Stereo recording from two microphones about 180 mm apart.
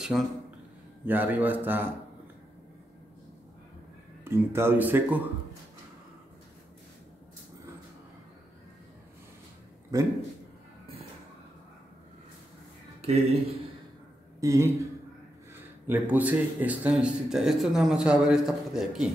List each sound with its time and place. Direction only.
0.1 s a man's voice: 5° right (ahead or behind)
4.2 s speech: 15° right (ahead or behind)
9.9 s a man's voice: 20° right (ahead or behind)
13.0 s speech: 35° right (ahead or behind)
14.4 s speech: 15° right (ahead or behind)
15.9 s a man's voice: 10° right (ahead or behind)